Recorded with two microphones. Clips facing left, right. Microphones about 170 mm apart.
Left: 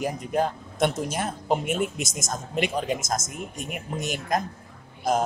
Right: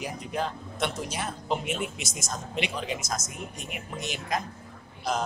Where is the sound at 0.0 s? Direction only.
50° left (ahead or behind).